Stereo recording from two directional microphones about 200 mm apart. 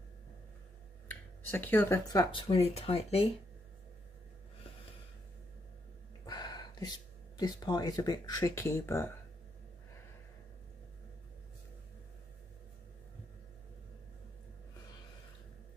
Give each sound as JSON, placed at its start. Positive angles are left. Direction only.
{"t": 1.0, "sound": "speech", "side_deg": 10}
{"t": 6.2, "sound": "a sound", "side_deg": 20}
{"t": 7.3, "sound": "speech", "side_deg": 20}